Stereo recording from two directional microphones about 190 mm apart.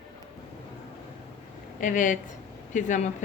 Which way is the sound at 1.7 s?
40° left (ahead or behind).